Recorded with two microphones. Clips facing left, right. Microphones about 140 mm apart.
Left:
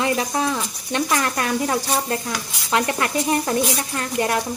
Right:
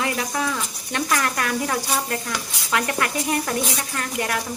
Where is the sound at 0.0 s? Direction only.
25° left (ahead or behind).